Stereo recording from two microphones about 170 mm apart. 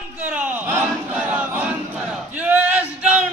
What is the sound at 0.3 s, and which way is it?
Battle cry, 10° right (ahead or behind).